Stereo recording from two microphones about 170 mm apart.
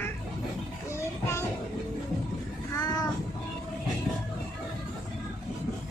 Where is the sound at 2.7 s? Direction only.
20° left (ahead or behind).